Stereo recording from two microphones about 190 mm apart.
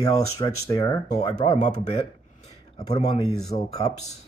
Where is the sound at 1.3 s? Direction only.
35° left (ahead or behind).